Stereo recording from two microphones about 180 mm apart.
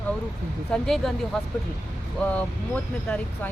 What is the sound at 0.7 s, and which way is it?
Speech, centre (ahead or behind).